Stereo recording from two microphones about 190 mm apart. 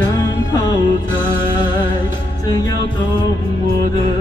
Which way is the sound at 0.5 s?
20° left (ahead or behind).